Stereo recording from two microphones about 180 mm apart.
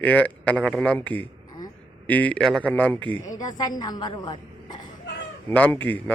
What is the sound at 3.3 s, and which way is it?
A woman's voice, 20° left (ahead or behind).